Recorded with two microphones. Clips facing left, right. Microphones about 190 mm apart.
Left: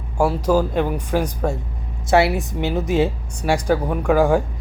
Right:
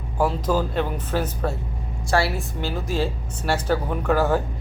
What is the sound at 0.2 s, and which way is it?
Speech, 10° left (ahead or behind).